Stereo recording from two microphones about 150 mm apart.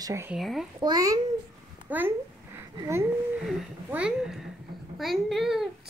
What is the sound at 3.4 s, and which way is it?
A child's voice, 5° right (ahead or behind).